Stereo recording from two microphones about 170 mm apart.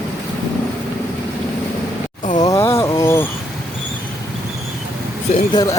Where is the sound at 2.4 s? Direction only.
20° left (ahead or behind).